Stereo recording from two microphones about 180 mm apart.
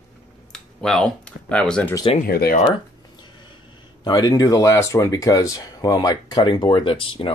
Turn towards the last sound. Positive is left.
turn(degrees=30)  # may be behind; listen again after turning